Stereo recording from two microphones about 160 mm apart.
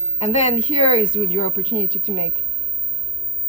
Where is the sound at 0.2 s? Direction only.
45° left (ahead or behind).